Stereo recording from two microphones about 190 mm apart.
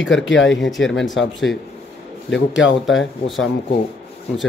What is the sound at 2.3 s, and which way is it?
Speech, 75° left (ahead or behind).